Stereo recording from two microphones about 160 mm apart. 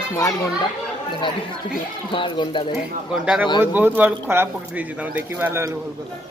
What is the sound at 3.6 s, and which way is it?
Speech, 15° right (ahead or behind).